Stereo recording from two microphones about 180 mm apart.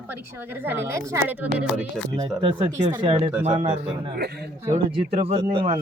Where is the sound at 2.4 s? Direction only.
30° right (ahead or behind).